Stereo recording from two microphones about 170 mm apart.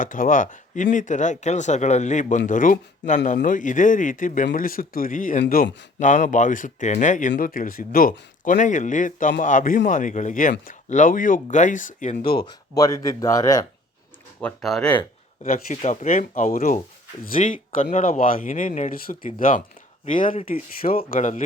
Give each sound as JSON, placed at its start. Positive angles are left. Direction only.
{"t": 0.0, "sound": "a man's voice", "side_deg": 50}
{"t": 12.4, "sound": "speech", "side_deg": 20}
{"t": 14.4, "sound": "speech", "side_deg": 0}
{"t": 15.5, "sound": "a man's voice", "side_deg": 45}